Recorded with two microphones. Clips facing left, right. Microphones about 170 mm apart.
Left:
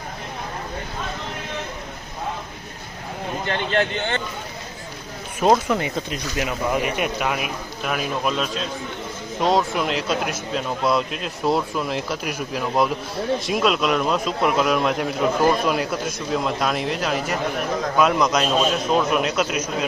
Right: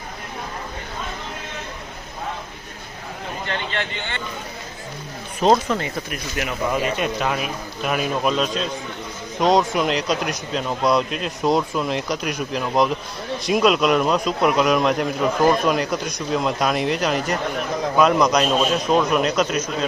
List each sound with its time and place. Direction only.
3.7 s speech: 45° left (ahead or behind)
5.4 s speech: 10° left (ahead or behind)
7.9 s a man's voice: centre (ahead or behind)